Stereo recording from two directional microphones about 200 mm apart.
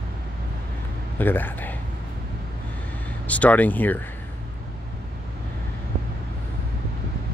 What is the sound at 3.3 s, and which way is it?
Speech, 5° left (ahead or behind).